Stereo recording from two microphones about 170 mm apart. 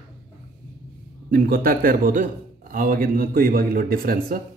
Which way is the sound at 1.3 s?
60° right (ahead or behind).